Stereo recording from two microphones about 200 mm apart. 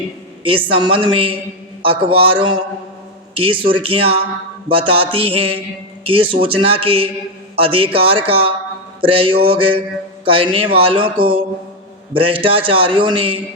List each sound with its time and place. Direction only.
0.4 s a man's voice: 25° right (ahead or behind)
9.0 s mantra: 25° right (ahead or behind)
9.3 s a man's voice: 25° right (ahead or behind)